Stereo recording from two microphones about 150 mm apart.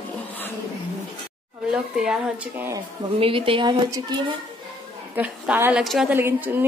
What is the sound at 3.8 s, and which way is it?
Speech, 20° right (ahead or behind).